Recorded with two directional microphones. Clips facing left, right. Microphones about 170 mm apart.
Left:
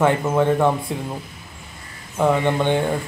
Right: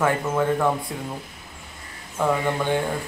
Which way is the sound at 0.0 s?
25° left (ahead or behind).